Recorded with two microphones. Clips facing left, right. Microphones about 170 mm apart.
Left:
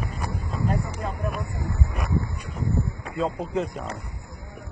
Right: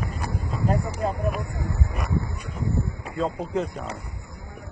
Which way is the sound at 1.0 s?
40° right (ahead or behind).